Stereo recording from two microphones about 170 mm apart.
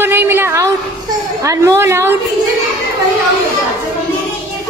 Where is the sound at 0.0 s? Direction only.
10° right (ahead or behind).